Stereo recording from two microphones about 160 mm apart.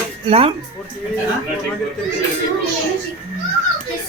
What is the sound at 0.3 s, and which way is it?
Speech, 35° right (ahead or behind).